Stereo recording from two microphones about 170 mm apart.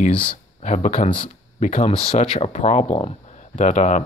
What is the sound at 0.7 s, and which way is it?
Speech, 45° left (ahead or behind).